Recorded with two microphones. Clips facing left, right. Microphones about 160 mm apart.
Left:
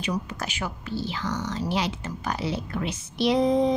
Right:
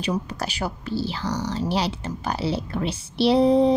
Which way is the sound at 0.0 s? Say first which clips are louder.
Right 3 dB; 35° right (ahead or behind).